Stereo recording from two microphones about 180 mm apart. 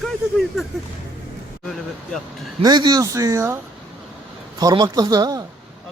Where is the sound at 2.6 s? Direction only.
25° right (ahead or behind).